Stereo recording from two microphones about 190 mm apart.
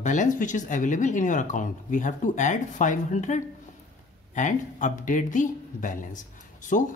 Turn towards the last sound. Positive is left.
turn(degrees=40)  # may be behind; listen again after turning